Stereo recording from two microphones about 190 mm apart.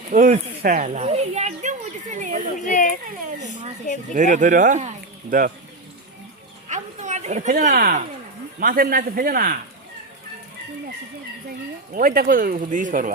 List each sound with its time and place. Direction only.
0.1 s speech: 40° right (ahead or behind)
2.6 s speech: 40° left (ahead or behind)
3.2 s speech: 40° right (ahead or behind)
6.7 s a sound: 40° right (ahead or behind)
8.6 s speech: 50° right (ahead or behind)
11.9 s speech: 50° right (ahead or behind)